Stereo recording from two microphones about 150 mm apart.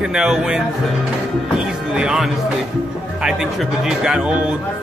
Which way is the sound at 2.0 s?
5° right (ahead or behind).